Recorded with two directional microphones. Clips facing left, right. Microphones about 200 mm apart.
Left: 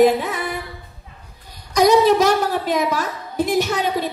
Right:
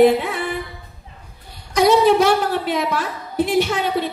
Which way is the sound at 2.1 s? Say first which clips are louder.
Right 1 dB; 40° left (ahead or behind).